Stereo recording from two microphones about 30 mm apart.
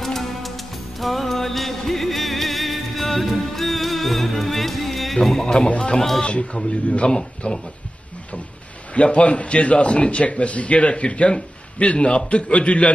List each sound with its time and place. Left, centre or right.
0.0 s music: centre
5.9 s speech: centre
6.5 s a man's voice: left
7.1 s speech: left
8.9 s a man's voice: left